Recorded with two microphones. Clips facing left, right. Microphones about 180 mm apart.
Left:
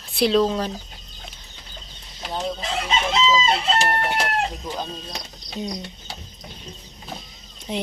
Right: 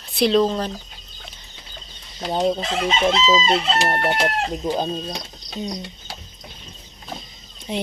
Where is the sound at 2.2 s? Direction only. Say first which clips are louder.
Right 7 dB; 35° right (ahead or behind).